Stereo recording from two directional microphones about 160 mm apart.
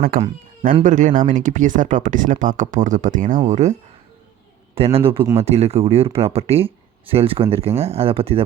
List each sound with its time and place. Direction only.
0.1 s speech: 60° right (ahead or behind); by 8.4 s 35° right (ahead or behind)